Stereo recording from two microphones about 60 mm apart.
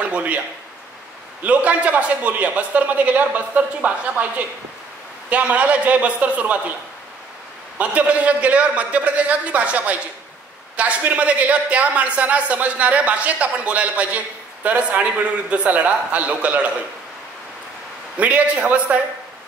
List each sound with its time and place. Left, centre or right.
0.0 s speech: right
1.4 s a woman's voice: right
7.8 s a woman's voice: right
18.2 s a woman's voice: right